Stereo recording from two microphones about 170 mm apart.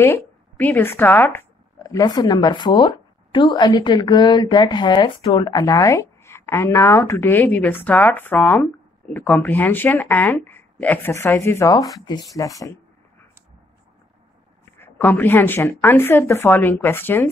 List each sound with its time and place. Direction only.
0.0 s a woman's voice: 10° left (ahead or behind)
14.8 s a woman's voice: 10° left (ahead or behind)